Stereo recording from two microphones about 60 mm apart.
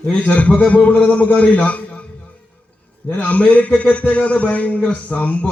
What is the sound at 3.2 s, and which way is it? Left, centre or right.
A man's voice, left.